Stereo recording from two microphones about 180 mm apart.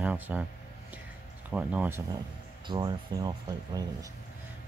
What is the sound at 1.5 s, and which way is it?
Speech, 5° right (ahead or behind).